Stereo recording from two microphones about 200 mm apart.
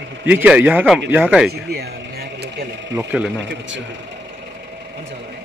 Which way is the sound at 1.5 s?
50° right (ahead or behind).